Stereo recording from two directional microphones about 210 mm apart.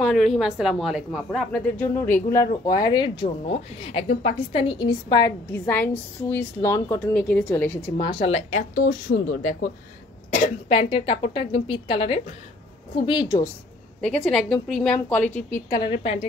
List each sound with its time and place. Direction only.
0.0 s a woman's voice: centre (ahead or behind)
8.0 s speech: 25° left (ahead or behind); by 9.7 s 45° left (ahead or behind)
10.3 s a woman's voice: 30° left (ahead or behind)
14.0 s a woman's voice: 5° left (ahead or behind)
15.7 s a woman's voice: 25° left (ahead or behind)